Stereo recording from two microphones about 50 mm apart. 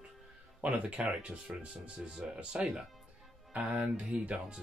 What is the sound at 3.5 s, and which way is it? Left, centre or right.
Music, right.